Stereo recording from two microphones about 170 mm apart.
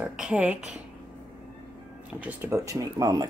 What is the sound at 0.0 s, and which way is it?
Speech, 5° right (ahead or behind).